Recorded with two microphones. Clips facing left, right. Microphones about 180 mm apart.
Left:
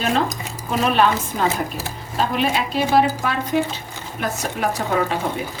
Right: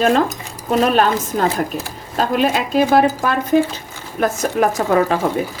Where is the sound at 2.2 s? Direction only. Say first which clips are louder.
Right 4 dB; 45° right (ahead or behind).